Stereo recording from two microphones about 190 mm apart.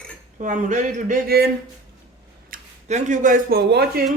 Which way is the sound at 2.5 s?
40° right (ahead or behind).